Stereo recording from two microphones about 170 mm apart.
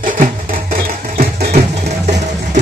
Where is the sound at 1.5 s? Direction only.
40° right (ahead or behind).